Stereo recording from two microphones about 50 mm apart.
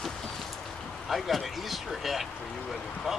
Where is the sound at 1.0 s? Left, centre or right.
Centre.